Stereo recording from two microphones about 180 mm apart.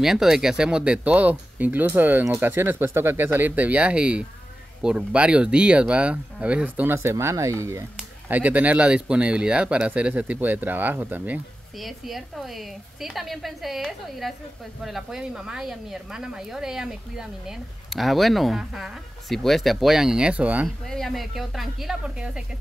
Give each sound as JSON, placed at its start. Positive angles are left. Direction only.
{"t": 0.0, "sound": "speech", "side_deg": 0}